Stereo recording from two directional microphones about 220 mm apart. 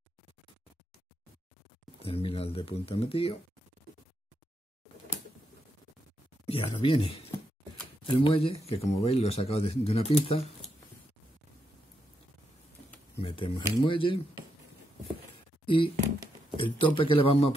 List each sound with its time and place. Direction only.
2.0 s speech: 25° left (ahead or behind)
6.4 s speech: 25° left (ahead or behind)
13.2 s speech: 25° left (ahead or behind)
15.6 s speech: 25° left (ahead or behind)